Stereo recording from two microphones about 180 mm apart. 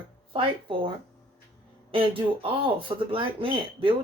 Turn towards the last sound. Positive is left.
turn(degrees=-30)  # may be behind; listen again after turning